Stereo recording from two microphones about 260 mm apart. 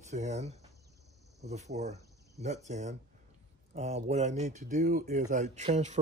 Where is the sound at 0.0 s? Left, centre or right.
Right.